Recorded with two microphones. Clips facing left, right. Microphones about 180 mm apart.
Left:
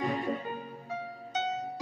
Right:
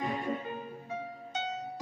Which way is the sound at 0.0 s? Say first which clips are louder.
Left 2 dB; 40° left (ahead or behind).